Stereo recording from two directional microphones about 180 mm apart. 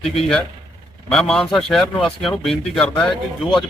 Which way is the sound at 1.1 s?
5° left (ahead or behind).